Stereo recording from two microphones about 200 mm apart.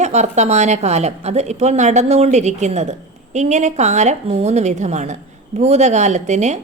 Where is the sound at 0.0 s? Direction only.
35° right (ahead or behind).